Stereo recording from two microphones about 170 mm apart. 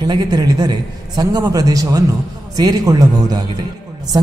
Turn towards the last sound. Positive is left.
turn(degrees=-25)  # may be behind; listen again after turning